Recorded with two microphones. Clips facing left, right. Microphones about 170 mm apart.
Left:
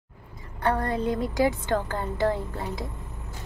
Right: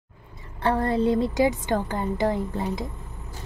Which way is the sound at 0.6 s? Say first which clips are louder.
Right 3 dB; 25° right (ahead or behind).